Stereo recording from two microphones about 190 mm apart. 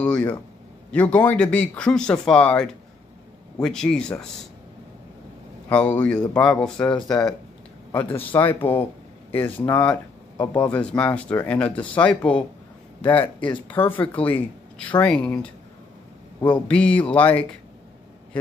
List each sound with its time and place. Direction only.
0.0 s speech: 5° left (ahead or behind)
5.7 s speech: 5° left (ahead or behind)
7.0 s speech: 20° left (ahead or behind)
7.9 s speech: 10° left (ahead or behind)
16.6 s speech: 5° left (ahead or behind)